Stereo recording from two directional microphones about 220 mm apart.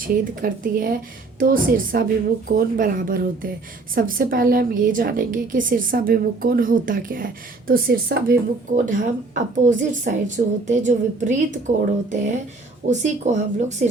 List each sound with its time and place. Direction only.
0.0 s speech: 40° right (ahead or behind)
12.9 s speech: 30° right (ahead or behind)